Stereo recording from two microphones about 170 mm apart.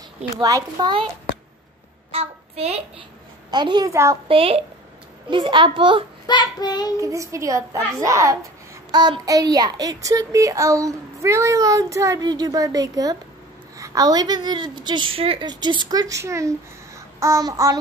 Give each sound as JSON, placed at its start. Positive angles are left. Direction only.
{"t": 0.4, "sound": "a child's voice", "side_deg": -20}
{"t": 2.1, "sound": "child singing", "side_deg": -35}
{"t": 3.4, "sound": "a child's voice", "side_deg": -25}
{"t": 4.3, "sound": "a woman's voice", "side_deg": -35}
{"t": 6.2, "sound": "child singing", "side_deg": 25}
{"t": 7.0, "sound": "a child's voice", "side_deg": -20}